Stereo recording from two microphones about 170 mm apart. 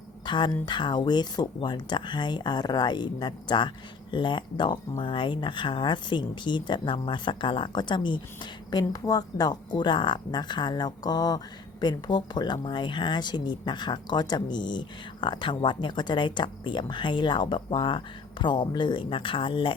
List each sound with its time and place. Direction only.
0.3 s speech: 25° left (ahead or behind)